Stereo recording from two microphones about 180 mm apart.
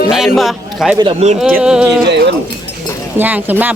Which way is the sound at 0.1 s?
Centre (ahead or behind).